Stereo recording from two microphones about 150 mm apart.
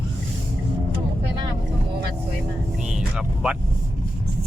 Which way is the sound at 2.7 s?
5° right (ahead or behind).